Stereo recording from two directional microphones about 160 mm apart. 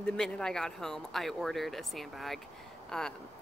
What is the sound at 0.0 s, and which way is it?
Speech, 5° left (ahead or behind).